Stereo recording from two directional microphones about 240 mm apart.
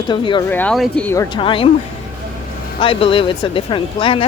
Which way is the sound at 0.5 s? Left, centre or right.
Centre.